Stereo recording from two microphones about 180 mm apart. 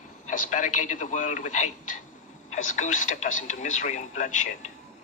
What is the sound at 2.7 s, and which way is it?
Speech, 45° left (ahead or behind).